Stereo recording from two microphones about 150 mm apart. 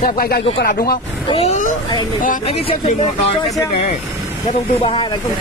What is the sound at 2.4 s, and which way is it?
Speech, 40° left (ahead or behind).